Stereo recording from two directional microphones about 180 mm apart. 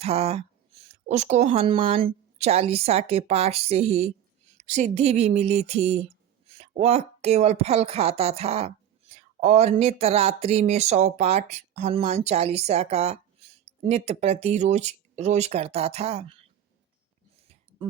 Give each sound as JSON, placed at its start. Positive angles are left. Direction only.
{"t": 0.0, "sound": "speech", "side_deg": -35}